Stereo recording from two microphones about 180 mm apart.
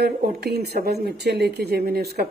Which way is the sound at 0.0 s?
60° right (ahead or behind).